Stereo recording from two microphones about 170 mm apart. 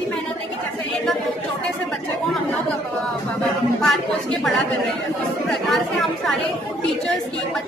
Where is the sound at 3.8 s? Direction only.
Centre (ahead or behind).